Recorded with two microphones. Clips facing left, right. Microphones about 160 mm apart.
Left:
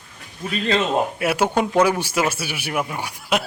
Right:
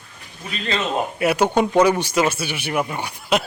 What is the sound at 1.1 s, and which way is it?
Speech, 5° left (ahead or behind).